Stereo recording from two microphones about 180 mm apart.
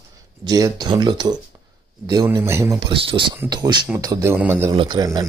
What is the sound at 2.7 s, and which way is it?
Speech, 25° right (ahead or behind).